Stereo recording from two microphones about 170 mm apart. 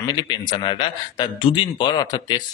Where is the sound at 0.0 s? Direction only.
25° left (ahead or behind).